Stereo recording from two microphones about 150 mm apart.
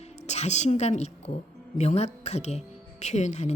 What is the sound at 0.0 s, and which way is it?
A woman's voice, 45° left (ahead or behind).